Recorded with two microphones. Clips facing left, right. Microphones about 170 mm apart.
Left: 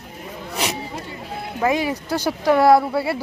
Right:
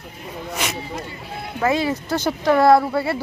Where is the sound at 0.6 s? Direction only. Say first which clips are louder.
Left 3 dB; 35° left (ahead or behind).